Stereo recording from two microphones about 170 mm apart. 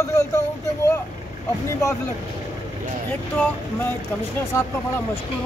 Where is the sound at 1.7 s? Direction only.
20° left (ahead or behind).